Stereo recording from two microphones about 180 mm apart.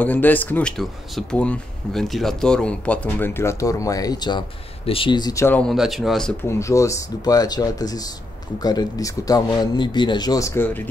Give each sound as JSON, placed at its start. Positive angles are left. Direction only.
{"t": 0.0, "sound": "speech", "side_deg": 10}
{"t": 6.4, "sound": "speech", "side_deg": 15}